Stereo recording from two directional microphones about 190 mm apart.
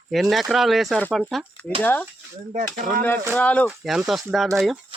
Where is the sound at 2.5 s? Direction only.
45° right (ahead or behind).